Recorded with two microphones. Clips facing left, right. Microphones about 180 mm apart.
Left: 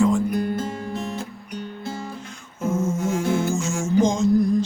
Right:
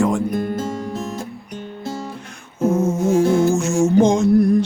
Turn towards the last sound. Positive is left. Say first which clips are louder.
# right 4 dB
turn(degrees=-70)  # may be behind; listen again after turning